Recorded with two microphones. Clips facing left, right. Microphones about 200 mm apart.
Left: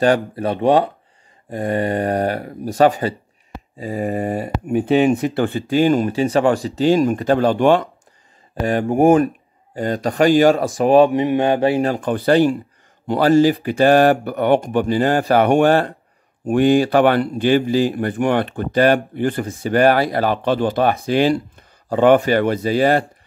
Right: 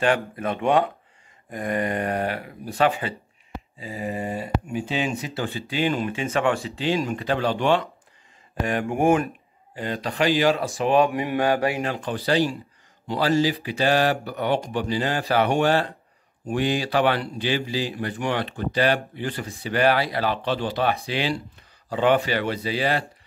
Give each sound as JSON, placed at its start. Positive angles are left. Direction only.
{"t": 0.0, "sound": "speech", "side_deg": 35}
{"t": 8.6, "sound": "speech", "side_deg": 35}
{"t": 9.8, "sound": "speech", "side_deg": 45}